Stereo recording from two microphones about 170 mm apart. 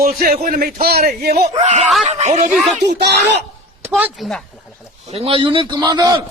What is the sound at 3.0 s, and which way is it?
Speech, 85° right.